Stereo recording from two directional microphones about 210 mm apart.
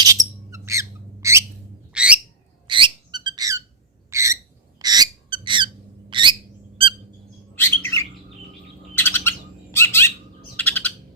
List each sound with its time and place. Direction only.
0.0 s bird: 15° right (ahead or behind)
2.6 s squeak: 25° right (ahead or behind)
4.1 s owl: 15° right (ahead or behind)
4.8 s a sound: 20° right (ahead or behind)
7.5 s bird: 10° left (ahead or behind)